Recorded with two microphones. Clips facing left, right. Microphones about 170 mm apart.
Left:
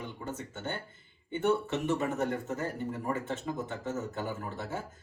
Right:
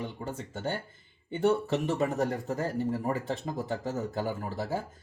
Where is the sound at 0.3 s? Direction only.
35° right (ahead or behind).